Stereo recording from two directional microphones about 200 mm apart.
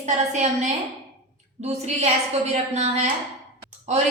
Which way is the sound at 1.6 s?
35° right (ahead or behind).